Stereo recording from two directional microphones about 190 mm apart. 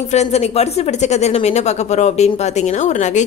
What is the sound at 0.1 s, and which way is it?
Speech, 35° left (ahead or behind).